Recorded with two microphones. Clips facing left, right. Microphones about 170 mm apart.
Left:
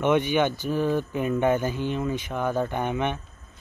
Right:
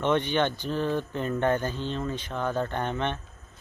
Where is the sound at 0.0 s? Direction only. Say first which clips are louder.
Left 3 dB; 10° left (ahead or behind).